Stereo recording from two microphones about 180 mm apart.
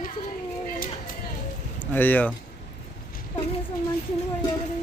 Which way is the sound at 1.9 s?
10° left (ahead or behind).